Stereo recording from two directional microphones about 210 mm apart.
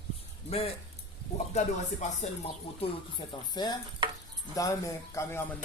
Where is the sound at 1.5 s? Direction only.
35° left (ahead or behind).